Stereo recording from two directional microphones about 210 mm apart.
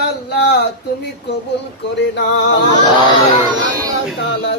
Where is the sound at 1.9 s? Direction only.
55° left (ahead or behind).